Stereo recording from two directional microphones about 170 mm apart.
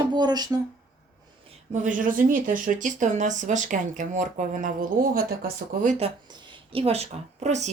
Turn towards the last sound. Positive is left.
turn(degrees=-40)  # may be behind; listen again after turning